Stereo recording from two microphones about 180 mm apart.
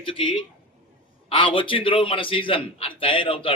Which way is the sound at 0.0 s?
30° left (ahead or behind).